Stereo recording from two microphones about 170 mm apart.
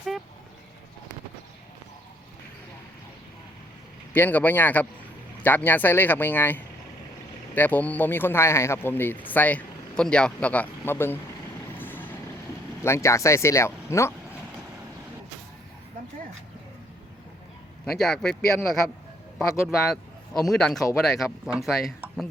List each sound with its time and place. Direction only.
4.1 s speech: 10° left (ahead or behind)
11.8 s vehicle: 10° left (ahead or behind)
12.8 s speech: 15° left (ahead or behind)
18.0 s speech: 5° left (ahead or behind)
19.4 s speech: centre (ahead or behind)